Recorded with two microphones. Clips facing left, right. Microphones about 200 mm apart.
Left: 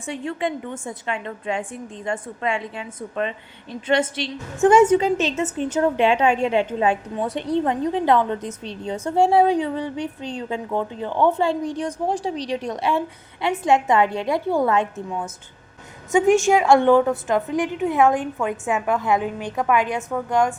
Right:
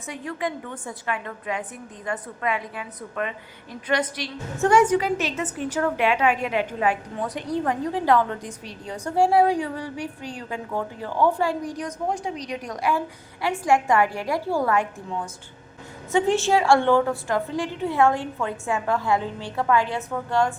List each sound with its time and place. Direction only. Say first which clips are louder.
0.0 s a woman's voice: left 4 dB; 25° left (ahead or behind)